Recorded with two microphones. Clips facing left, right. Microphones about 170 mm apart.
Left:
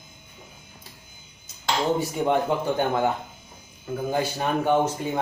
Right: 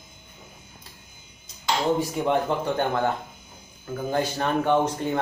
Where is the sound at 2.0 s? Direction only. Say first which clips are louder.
Left 1 dB; 5° left (ahead or behind).